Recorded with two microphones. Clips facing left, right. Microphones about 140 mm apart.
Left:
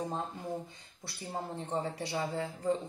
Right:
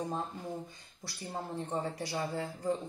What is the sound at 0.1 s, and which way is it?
Speech, 20° left (ahead or behind).